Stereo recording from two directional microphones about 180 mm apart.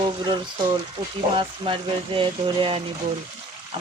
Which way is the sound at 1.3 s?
30° right (ahead or behind).